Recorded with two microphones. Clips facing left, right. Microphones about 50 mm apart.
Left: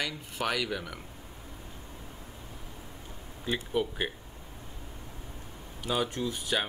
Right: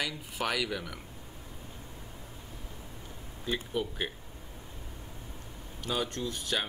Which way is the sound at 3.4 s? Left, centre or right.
Centre.